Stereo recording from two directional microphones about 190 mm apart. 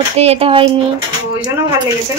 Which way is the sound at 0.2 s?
30° right (ahead or behind).